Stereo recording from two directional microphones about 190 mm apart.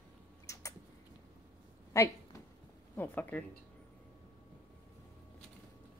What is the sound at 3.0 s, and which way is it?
Speech, 10° left (ahead or behind).